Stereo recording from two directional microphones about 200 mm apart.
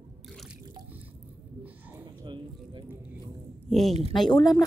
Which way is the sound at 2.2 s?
25° right (ahead or behind).